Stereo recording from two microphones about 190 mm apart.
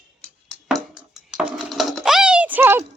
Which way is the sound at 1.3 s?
5° right (ahead or behind).